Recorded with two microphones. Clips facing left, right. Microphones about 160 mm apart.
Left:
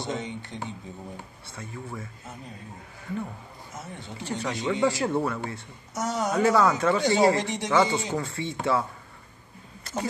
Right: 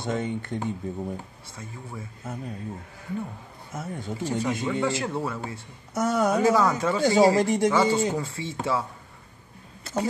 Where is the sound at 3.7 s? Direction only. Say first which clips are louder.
Right 7 dB; 45° right (ahead or behind).